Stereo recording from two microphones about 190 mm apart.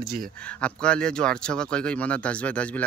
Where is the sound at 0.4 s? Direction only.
5° left (ahead or behind).